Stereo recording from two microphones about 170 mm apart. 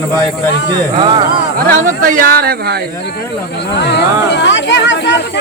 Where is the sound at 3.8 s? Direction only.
80° left.